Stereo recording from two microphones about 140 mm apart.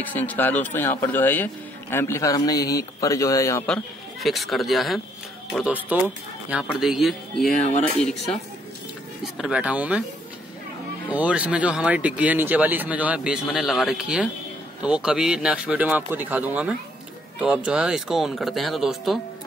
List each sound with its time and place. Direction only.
0.0 s speech: 10° left (ahead or behind)
3.6 s speech: 5° left (ahead or behind)
5.6 s speech: 10° right (ahead or behind); by 8.4 s 5° left (ahead or behind)
9.2 s speech: 5° right (ahead or behind)
11.1 s speech: 10° right (ahead or behind)